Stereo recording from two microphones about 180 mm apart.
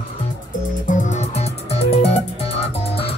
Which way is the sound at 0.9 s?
40° left (ahead or behind).